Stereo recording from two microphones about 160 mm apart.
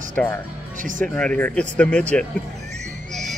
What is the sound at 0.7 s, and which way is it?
Speech, 55° right (ahead or behind).